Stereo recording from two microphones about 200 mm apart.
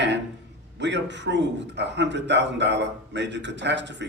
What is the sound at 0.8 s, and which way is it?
A man's voice, 60° right (ahead or behind).